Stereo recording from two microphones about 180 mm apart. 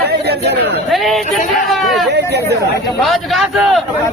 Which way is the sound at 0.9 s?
Centre (ahead or behind).